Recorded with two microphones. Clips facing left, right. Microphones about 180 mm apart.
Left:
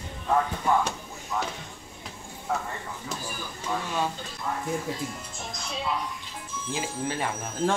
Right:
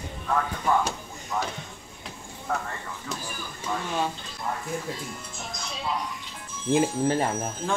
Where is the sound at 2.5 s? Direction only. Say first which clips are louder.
Even; 5° left (ahead or behind).